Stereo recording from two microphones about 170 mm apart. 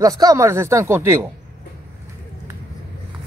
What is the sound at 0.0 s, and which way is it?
Speech, 20° right (ahead or behind).